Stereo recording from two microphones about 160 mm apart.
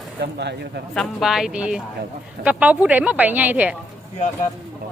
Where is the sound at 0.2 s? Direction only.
90° right.